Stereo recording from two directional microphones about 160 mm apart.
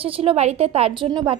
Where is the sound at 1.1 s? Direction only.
25° right (ahead or behind).